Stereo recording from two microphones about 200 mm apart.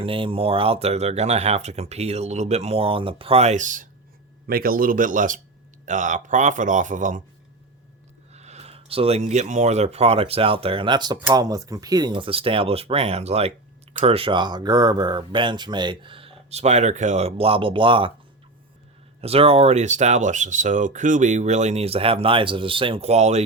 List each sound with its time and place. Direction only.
0.0 s speech: 25° right (ahead or behind)
8.3 s speech: 35° right (ahead or behind)
19.2 s speech: 30° right (ahead or behind)